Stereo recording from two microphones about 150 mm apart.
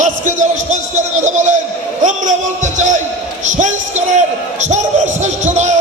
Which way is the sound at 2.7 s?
55° right (ahead or behind).